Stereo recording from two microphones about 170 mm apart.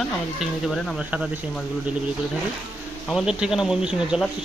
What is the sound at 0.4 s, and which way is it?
Speech, 5° right (ahead or behind).